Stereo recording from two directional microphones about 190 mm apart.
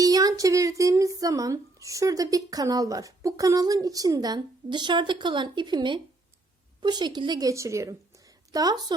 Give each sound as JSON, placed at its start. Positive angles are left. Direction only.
{"t": 0.0, "sound": "speech", "side_deg": -20}